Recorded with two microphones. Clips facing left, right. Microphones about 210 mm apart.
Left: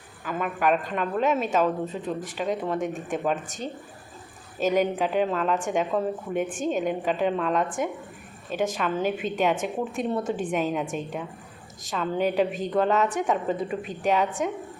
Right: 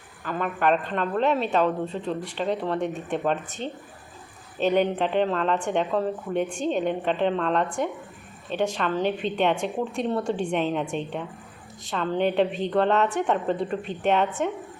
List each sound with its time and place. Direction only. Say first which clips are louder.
0.3 s a woman's voice: right 1 dB; 5° left (ahead or behind)
4.5 s a woman's voice: right 1 dB; 5° left (ahead or behind)
12.5 s speech: right 2 dB; 45° left (ahead or behind)
12.7 s a woman's voice: right 1 dB; centre (ahead or behind)